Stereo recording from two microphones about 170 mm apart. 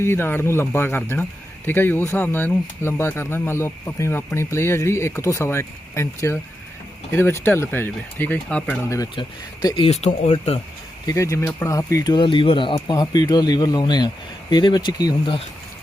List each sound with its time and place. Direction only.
0.0 s speech: 15° left (ahead or behind)
8.9 s speech: 20° left (ahead or behind)
11.0 s speech: 20° left (ahead or behind)